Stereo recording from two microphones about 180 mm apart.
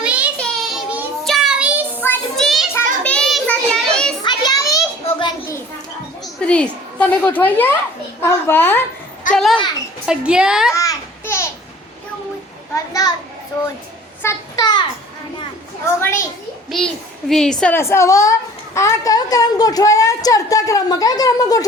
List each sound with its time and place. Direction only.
0.0 s child singing: 5° right (ahead or behind)
2.0 s child singing: 5° left (ahead or behind)
4.2 s a sound: 25° left (ahead or behind)
6.4 s a woman's voice: 5° left (ahead or behind)
9.3 s a woman's voice: centre (ahead or behind)
10.8 s babbling: 15° left (ahead or behind)
12.7 s a child's voice: 20° left (ahead or behind)
14.2 s a sound: 15° left (ahead or behind)
16.0 s a child's voice: 15° left (ahead or behind)
16.7 s a child's voice: centre (ahead or behind); by 21.7 s 20° left (ahead or behind)